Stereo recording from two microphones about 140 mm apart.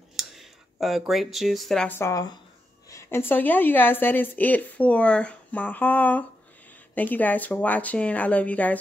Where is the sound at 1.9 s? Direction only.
20° left (ahead or behind).